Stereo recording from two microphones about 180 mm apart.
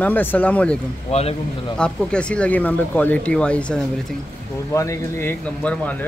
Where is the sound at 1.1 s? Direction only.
35° left (ahead or behind).